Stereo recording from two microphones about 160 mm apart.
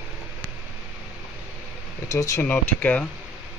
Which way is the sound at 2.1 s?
20° left (ahead or behind).